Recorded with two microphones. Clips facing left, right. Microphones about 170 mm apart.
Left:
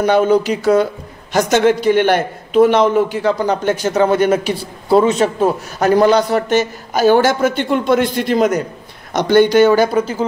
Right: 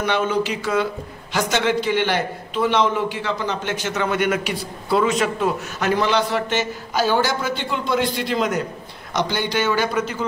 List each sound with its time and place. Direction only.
0.0 s a man's voice: 40° left (ahead or behind)